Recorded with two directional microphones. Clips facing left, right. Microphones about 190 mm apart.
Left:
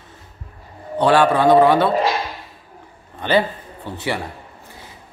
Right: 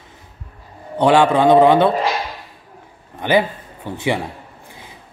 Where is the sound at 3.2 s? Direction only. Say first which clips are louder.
Right 1 dB; 15° right (ahead or behind).